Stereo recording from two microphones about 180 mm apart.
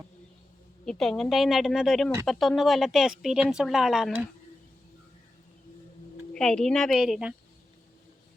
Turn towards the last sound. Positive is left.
turn(degrees=-5)  # may be behind; listen again after turning